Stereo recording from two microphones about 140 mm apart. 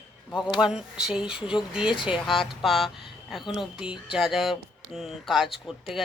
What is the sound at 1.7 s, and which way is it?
Speech, 5° right (ahead or behind).